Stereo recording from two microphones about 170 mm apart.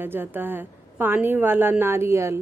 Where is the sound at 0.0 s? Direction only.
10° right (ahead or behind).